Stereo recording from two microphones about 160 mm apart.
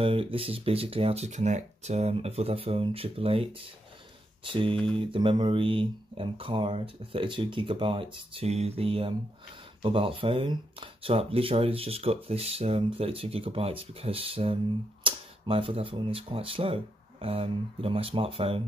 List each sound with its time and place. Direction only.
0.0 s speech: 35° right (ahead or behind)
4.5 s speech: 30° right (ahead or behind)